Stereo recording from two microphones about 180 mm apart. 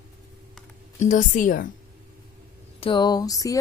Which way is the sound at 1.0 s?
45° left (ahead or behind).